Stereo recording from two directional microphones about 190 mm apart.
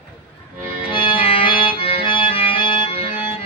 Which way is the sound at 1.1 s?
25° left (ahead or behind).